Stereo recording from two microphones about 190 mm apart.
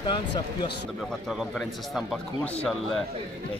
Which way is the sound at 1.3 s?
Centre (ahead or behind).